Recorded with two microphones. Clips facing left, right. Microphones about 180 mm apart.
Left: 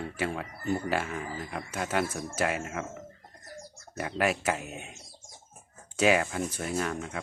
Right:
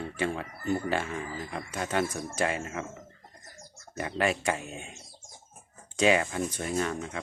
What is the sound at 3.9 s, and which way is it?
Speech, 5° left (ahead or behind).